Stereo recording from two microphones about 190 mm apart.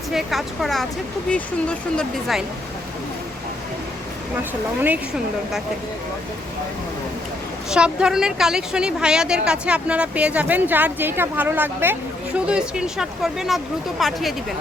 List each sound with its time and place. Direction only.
0.1 s a woman's voice: centre (ahead or behind)
7.7 s a woman's voice: 5° right (ahead or behind)